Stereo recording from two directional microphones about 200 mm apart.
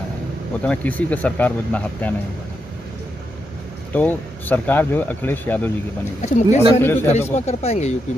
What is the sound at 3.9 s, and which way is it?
Speech, 10° left (ahead or behind).